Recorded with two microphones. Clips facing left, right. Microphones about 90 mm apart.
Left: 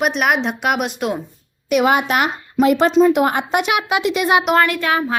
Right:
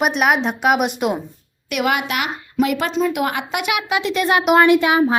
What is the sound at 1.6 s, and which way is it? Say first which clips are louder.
A woman's voice: left 5 dB; 25° left (ahead or behind).